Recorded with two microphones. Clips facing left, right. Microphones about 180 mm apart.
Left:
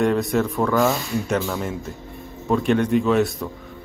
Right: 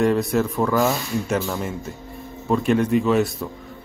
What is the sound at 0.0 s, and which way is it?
Speech, centre (ahead or behind).